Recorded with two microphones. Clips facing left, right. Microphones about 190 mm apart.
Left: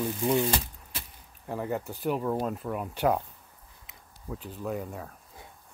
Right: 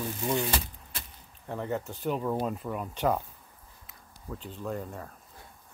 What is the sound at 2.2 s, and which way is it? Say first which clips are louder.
Speech: left 1 dB; centre (ahead or behind).